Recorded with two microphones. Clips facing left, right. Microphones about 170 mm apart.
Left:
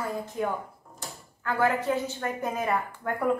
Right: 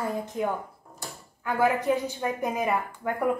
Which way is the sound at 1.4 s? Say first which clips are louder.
Right 1 dB; 15° right (ahead or behind).